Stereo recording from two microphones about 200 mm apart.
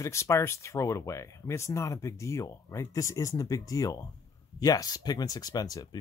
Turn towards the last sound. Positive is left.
turn(degrees=20)  # may be behind; listen again after turning